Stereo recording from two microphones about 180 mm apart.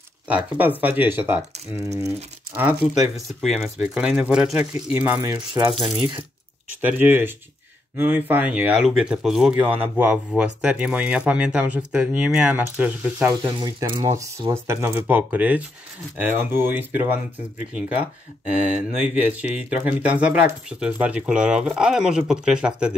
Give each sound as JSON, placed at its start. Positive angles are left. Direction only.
{"t": 0.6, "sound": "speech", "side_deg": -10}
{"t": 2.5, "sound": "speech", "side_deg": -10}
{"t": 3.3, "sound": "speech", "side_deg": 0}
{"t": 5.9, "sound": "coin", "side_deg": -25}
{"t": 6.8, "sound": "speech", "side_deg": -10}
{"t": 13.3, "sound": "speech", "side_deg": -25}
{"t": 18.5, "sound": "speech", "side_deg": -5}